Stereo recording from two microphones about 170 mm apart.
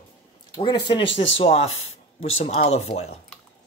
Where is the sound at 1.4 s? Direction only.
35° left (ahead or behind).